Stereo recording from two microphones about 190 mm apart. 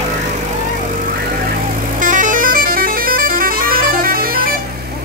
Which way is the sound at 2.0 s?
45° right (ahead or behind).